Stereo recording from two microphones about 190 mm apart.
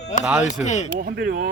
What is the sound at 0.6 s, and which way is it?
Speech, 35° left (ahead or behind).